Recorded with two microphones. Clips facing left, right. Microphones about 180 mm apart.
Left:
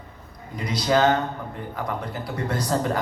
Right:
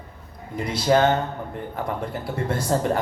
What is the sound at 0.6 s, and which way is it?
Speech, 25° right (ahead or behind).